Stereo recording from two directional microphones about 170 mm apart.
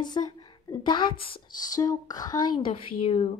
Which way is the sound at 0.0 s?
25° left (ahead or behind).